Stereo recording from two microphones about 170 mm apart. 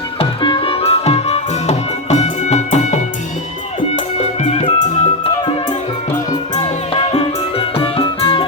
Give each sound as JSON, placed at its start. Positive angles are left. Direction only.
{"t": 0.2, "sound": "music", "side_deg": 30}
{"t": 6.6, "sound": "music", "side_deg": 30}